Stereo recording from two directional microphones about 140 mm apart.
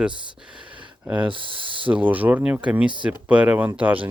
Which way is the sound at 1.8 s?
10° right (ahead or behind).